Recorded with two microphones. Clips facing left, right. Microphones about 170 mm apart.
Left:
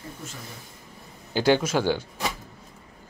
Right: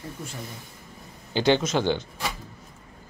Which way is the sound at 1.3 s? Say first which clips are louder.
Even; 10° left (ahead or behind).